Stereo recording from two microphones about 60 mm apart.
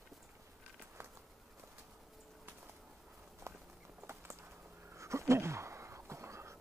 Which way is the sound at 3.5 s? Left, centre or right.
Right.